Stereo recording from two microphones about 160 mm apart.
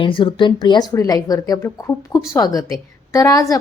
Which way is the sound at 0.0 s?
30° left (ahead or behind).